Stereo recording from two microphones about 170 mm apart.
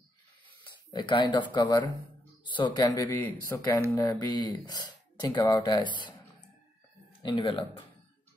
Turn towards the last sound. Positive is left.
turn(degrees=30)  # may be behind; listen again after turning